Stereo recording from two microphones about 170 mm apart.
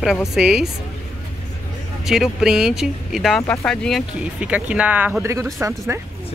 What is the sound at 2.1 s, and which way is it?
Speech, centre (ahead or behind).